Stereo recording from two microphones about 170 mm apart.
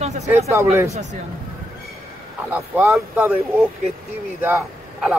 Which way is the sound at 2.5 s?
10° right (ahead or behind).